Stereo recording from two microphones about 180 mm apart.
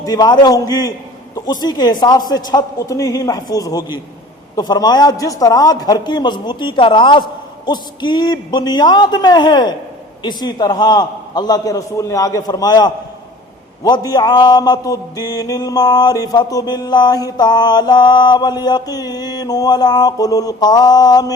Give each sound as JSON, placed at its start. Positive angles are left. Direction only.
{"t": 0.0, "sound": "mantra", "side_deg": 20}